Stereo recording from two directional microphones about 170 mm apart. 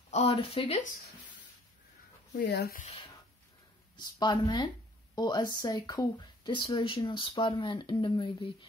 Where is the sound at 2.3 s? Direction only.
70° left (ahead or behind).